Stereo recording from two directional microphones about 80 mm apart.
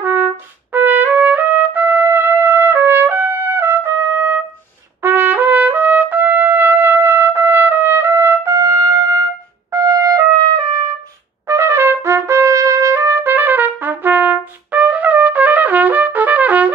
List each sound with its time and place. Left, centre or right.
0.0 s trumpet: right
11.4 s trumpet: right